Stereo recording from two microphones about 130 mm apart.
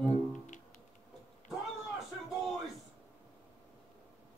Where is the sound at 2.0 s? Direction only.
Centre (ahead or behind).